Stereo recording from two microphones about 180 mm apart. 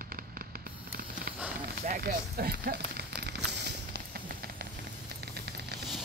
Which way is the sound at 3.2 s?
65° right (ahead or behind).